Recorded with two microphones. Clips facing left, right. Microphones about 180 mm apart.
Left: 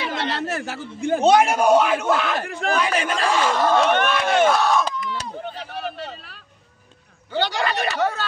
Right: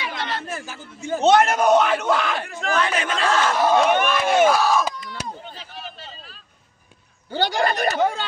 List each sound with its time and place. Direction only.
0.0 s speech: 70° left (ahead or behind)
1.2 s a man's voice: 10° left (ahead or behind)
2.4 s speech: 60° left (ahead or behind)
2.7 s a man's voice: 10° left (ahead or behind)
3.5 s speech: 10° right (ahead or behind)
5.4 s a sound: 65° left (ahead or behind)
7.2 s speech: 40° right (ahead or behind)
8.0 s speech: 20° right (ahead or behind)